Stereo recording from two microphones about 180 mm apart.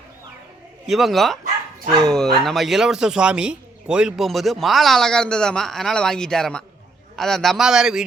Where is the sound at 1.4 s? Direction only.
50° right (ahead or behind).